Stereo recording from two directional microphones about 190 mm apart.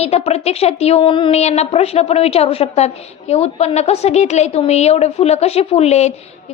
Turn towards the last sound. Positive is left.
turn(degrees=35)  # may be behind; listen again after turning